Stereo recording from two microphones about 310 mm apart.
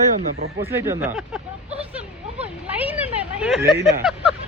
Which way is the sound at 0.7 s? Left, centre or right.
Centre.